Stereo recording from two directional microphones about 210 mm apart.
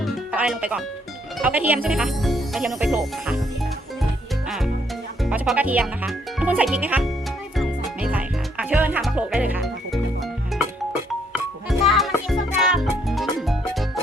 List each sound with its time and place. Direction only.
0.0 s music: 5° right (ahead or behind)
1.4 s speech: 5° right (ahead or behind)
4.4 s music: centre (ahead or behind)
5.2 s speech: 5° right (ahead or behind)
7.5 s music: centre (ahead or behind)
11.7 s music: centre (ahead or behind)